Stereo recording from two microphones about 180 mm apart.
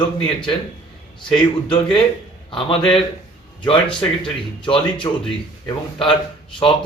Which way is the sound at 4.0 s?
30° left (ahead or behind).